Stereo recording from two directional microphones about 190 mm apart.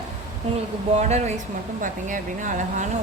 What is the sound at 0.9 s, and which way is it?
Speech, 35° right (ahead or behind).